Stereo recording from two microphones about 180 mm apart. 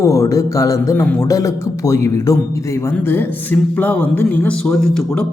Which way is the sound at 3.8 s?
10° left (ahead or behind).